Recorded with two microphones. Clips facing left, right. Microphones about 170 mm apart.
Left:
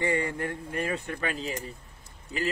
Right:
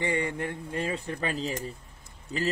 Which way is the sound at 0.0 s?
20° right (ahead or behind).